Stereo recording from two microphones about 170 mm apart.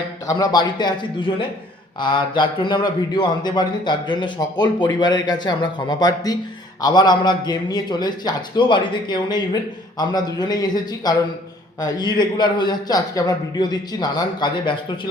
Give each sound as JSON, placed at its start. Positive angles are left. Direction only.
{"t": 0.3, "sound": "a man's voice", "side_deg": 20}